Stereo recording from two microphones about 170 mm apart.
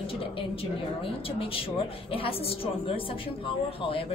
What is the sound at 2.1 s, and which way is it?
A woman's voice, 35° left (ahead or behind).